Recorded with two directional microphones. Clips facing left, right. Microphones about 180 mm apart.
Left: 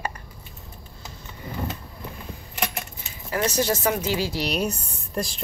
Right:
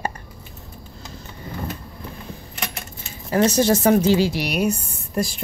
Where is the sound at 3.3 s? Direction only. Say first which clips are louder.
Right 7 dB; 25° right (ahead or behind).